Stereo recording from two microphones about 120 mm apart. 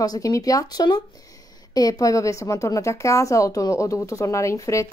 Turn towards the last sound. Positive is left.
turn(degrees=25)  # may be behind; listen again after turning